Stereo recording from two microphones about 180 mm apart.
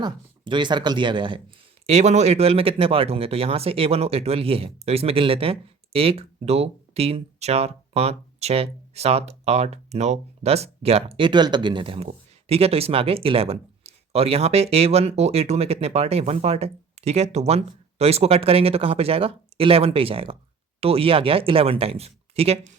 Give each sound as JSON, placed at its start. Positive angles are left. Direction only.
{"t": 0.0, "sound": "speech", "side_deg": -25}
{"t": 1.9, "sound": "speech", "side_deg": -40}